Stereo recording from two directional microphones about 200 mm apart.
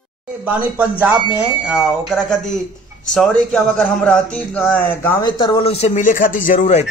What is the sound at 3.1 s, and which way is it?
Speech, 5° left (ahead or behind).